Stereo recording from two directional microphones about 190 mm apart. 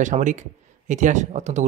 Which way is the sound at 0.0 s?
40° right (ahead or behind).